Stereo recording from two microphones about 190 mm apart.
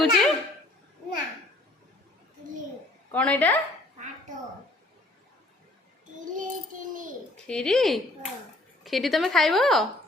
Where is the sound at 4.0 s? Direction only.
40° right (ahead or behind).